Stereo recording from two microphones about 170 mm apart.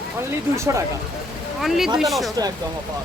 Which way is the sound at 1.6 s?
Centre (ahead or behind).